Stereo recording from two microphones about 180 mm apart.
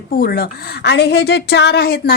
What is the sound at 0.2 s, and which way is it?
A woman's voice, 60° left (ahead or behind).